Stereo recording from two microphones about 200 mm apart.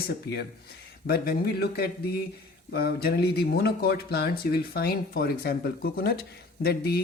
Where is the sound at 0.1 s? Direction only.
55° left (ahead or behind).